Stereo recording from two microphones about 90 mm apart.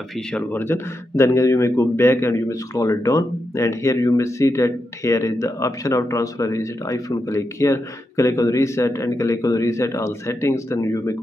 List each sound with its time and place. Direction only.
0.3 s speech: 20° left (ahead or behind); by 11.1 s 35° left (ahead or behind)